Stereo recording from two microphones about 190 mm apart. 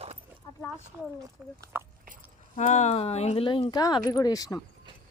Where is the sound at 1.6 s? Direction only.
15° right (ahead or behind).